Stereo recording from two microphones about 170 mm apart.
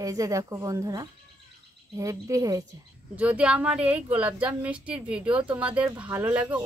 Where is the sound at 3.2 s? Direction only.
10° right (ahead or behind).